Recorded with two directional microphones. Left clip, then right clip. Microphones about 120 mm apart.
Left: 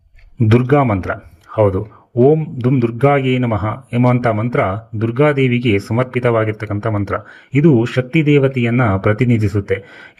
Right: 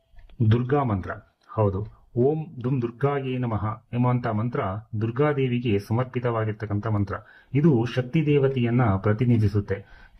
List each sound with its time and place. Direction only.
0.4 s a man's voice: 30° left (ahead or behind)
2.1 s a man's voice: 5° left (ahead or behind)
2.8 s speech: 30° left (ahead or behind)